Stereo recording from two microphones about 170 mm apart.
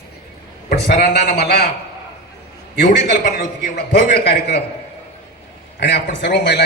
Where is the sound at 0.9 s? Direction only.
60° left (ahead or behind).